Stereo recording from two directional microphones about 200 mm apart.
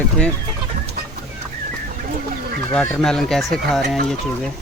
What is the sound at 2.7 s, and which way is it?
Speech, 5° left (ahead or behind).